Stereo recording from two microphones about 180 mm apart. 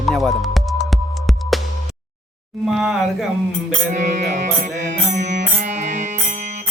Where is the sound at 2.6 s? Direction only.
Centre (ahead or behind).